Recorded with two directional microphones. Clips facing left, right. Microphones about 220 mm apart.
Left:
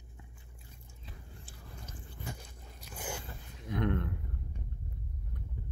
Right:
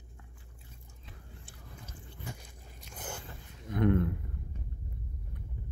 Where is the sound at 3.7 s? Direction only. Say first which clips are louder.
Right 5 dB; 5° right (ahead or behind).